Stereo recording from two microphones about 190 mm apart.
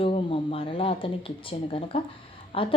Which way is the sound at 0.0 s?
30° left (ahead or behind).